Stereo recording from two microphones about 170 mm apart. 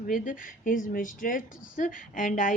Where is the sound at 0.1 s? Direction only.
55° left (ahead or behind).